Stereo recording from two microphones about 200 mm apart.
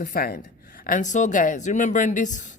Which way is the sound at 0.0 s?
45° left (ahead or behind).